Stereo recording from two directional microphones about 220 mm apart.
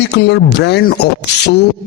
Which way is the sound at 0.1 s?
50° left (ahead or behind).